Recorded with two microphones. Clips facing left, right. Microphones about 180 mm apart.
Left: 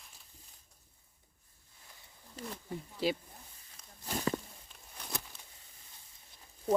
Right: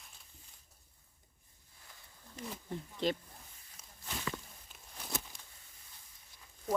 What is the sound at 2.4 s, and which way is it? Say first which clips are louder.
Speech: even; 5° left (ahead or behind).